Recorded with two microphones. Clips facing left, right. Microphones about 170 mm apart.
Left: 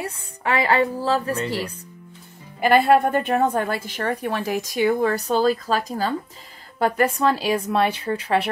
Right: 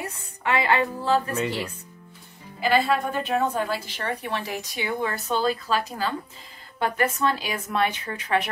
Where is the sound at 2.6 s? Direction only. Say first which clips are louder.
Left 6 dB; 55° left (ahead or behind).